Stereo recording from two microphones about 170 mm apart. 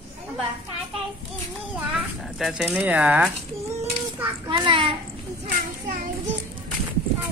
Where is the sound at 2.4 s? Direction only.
5° right (ahead or behind).